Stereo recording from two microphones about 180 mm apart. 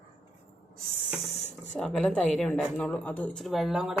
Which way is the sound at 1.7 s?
5° left (ahead or behind).